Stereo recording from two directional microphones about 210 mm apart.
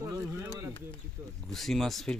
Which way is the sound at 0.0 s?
10° right (ahead or behind).